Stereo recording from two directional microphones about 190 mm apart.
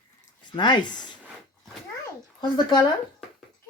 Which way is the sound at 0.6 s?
25° left (ahead or behind).